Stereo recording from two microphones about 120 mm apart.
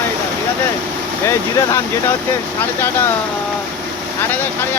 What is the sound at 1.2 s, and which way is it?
Speech, 25° left (ahead or behind).